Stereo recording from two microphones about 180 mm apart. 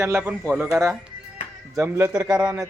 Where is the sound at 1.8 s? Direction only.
10° right (ahead or behind).